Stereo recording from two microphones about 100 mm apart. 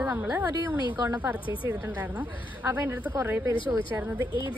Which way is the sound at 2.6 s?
25° right (ahead or behind).